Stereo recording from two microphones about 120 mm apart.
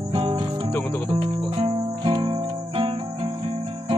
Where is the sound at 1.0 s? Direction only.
50° right (ahead or behind).